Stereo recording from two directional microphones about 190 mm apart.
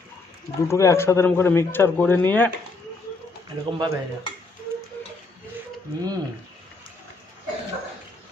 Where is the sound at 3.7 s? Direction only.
25° right (ahead or behind).